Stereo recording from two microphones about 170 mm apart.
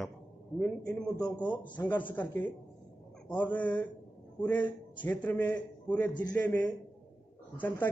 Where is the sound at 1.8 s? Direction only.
15° left (ahead or behind).